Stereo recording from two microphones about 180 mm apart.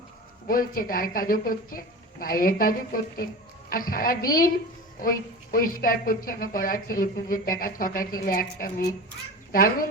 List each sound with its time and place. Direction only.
0.4 s speech: 50° left (ahead or behind)